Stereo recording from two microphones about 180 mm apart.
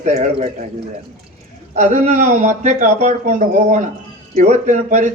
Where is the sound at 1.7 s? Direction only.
40° right (ahead or behind).